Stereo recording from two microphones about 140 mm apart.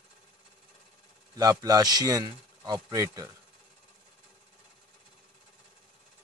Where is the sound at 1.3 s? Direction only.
25° right (ahead or behind).